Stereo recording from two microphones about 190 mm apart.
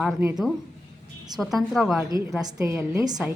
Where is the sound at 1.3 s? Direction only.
Centre (ahead or behind).